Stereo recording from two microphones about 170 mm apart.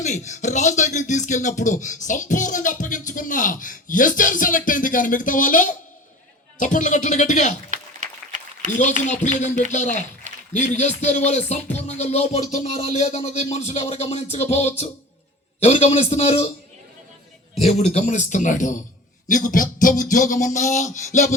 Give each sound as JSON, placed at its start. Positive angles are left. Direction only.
{"t": 0.0, "sound": "speech", "side_deg": 45}
{"t": 7.7, "sound": "applause", "side_deg": -50}
{"t": 8.8, "sound": "speech", "side_deg": 45}
{"t": 10.5, "sound": "music", "side_deg": 45}
{"t": 17.5, "sound": "speech", "side_deg": 40}